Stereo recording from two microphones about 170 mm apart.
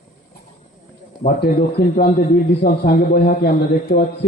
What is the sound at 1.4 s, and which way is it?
A man's voice, 65° left (ahead or behind).